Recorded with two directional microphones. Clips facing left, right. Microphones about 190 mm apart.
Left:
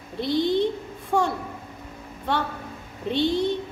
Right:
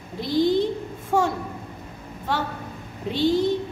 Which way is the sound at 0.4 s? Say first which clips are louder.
Right 3 dB; 10° right (ahead or behind).